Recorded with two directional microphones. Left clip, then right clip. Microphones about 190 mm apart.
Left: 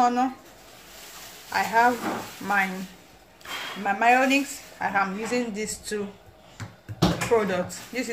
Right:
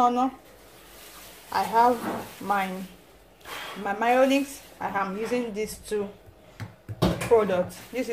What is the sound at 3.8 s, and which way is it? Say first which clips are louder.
Speech: left 2 dB; 10° right (ahead or behind).